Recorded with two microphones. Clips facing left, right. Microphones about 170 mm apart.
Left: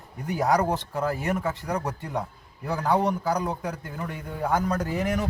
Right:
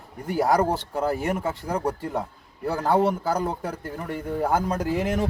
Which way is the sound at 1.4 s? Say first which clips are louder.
Right 2 dB; 30° right (ahead or behind).